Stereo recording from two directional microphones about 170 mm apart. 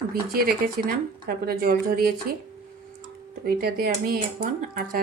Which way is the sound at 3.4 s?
65° right (ahead or behind).